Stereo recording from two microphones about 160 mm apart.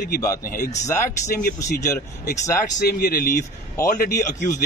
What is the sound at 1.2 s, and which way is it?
Speech, 60° left (ahead or behind).